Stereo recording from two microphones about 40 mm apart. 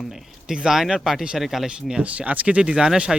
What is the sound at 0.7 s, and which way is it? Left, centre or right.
Speech, centre.